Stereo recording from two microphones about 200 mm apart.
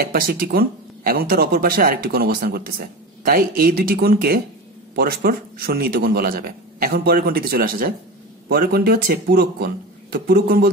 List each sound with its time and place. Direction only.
0.0 s a man's voice: 45° right (ahead or behind)